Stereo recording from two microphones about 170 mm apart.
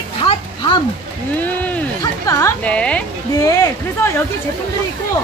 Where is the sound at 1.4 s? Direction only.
10° left (ahead or behind).